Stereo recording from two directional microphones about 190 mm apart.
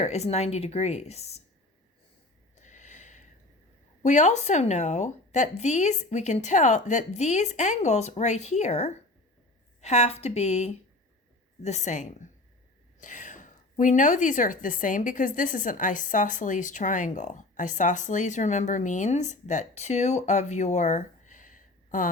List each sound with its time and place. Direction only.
0.0 s a woman's voice: 35° left (ahead or behind)
2.6 s snort: 40° left (ahead or behind)
4.0 s a woman's voice: 40° left (ahead or behind)